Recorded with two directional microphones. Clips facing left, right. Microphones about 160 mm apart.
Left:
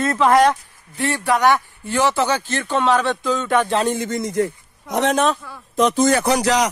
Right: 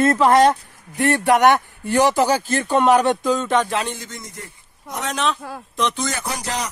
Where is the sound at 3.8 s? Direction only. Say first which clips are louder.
Left 9 dB; 55° left (ahead or behind); by 5.1 s 80° left.